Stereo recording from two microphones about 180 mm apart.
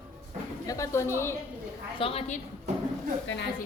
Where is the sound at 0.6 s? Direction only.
20° left (ahead or behind).